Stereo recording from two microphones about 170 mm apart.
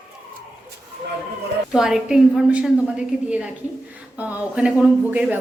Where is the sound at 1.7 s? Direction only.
5° right (ahead or behind).